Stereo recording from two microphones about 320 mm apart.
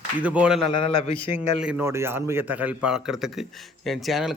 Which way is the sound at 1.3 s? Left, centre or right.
Centre.